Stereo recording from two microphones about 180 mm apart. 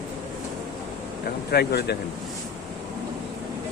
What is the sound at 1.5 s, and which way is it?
Speech, 65° left (ahead or behind).